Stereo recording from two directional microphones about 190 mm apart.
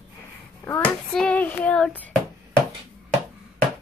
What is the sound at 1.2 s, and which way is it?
Child singing, 5° left (ahead or behind).